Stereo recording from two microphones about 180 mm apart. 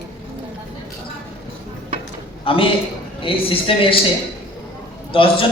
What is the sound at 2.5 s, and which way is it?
A man's voice, 30° left (ahead or behind).